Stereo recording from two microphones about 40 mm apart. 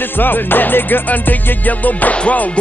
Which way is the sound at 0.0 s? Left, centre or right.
Left.